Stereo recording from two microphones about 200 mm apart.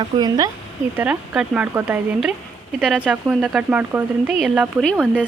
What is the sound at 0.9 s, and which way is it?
A woman's voice, 5° right (ahead or behind).